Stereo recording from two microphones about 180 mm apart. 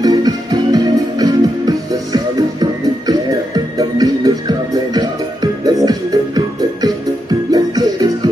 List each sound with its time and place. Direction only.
0.0 s music: 20° right (ahead or behind)